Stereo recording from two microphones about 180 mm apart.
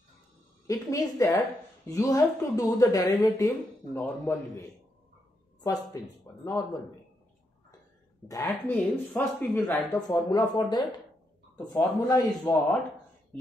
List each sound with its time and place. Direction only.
0.7 s a woman's voice: 20° left (ahead or behind)
8.3 s speech: 15° left (ahead or behind)
9.9 s a woman's voice: 20° left (ahead or behind)
13.3 s a sound: 5° left (ahead or behind)